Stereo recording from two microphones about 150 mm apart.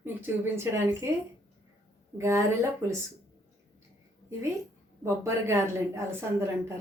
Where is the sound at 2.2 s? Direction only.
20° right (ahead or behind).